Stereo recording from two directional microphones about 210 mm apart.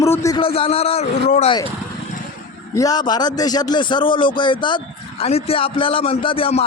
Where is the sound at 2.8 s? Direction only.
20° left (ahead or behind).